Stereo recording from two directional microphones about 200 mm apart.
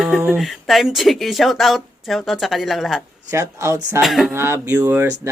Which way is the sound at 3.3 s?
15° right (ahead or behind).